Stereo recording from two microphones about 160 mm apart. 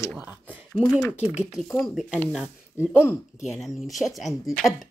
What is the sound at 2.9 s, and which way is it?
Speech, 15° left (ahead or behind).